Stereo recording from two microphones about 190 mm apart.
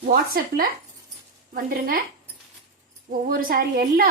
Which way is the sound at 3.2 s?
50° right (ahead or behind).